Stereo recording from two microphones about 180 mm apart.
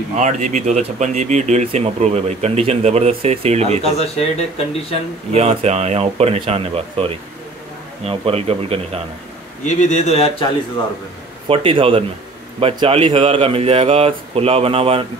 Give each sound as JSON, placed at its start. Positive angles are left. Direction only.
{"t": 0.2, "sound": "speech", "side_deg": -40}
{"t": 3.8, "sound": "speech", "side_deg": 35}
{"t": 5.3, "sound": "speech", "side_deg": -35}
{"t": 9.7, "sound": "speech", "side_deg": 40}
{"t": 11.4, "sound": "speech", "side_deg": -30}